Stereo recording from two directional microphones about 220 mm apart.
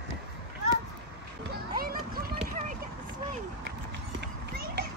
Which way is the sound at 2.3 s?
30° right (ahead or behind).